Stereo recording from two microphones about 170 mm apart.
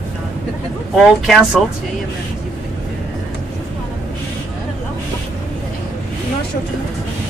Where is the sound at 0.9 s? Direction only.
Centre (ahead or behind).